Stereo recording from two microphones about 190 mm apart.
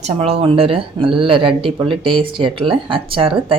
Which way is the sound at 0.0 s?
35° right (ahead or behind).